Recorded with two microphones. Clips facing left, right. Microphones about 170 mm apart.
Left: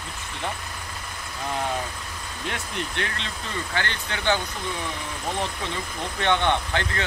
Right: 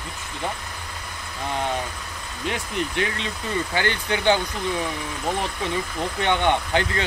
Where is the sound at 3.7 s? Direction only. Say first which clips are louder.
Right 5 dB; 15° right (ahead or behind).